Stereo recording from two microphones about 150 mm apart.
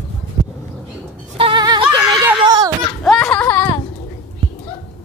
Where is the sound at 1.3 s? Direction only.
35° right (ahead or behind).